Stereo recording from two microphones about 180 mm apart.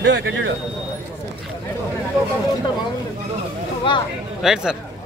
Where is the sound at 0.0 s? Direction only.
90° right.